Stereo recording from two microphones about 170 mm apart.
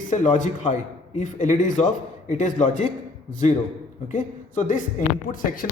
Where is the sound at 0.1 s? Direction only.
45° left (ahead or behind).